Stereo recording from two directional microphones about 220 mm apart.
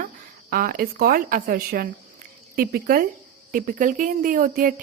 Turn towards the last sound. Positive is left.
turn(degrees=-40)  # may be behind; listen again after turning